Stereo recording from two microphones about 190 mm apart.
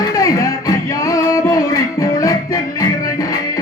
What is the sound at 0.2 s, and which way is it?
Music, 15° left (ahead or behind).